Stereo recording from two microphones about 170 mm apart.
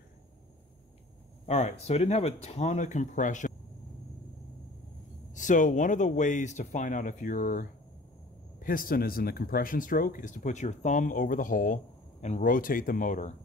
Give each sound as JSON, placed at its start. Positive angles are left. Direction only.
{"t": 1.4, "sound": "speech", "side_deg": 40}
{"t": 5.3, "sound": "speech", "side_deg": 50}